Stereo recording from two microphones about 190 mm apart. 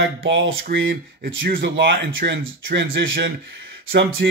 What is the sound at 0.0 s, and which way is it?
Speech, 75° right (ahead or behind).